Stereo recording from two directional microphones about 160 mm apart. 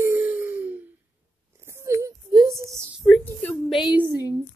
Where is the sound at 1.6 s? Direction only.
15° right (ahead or behind).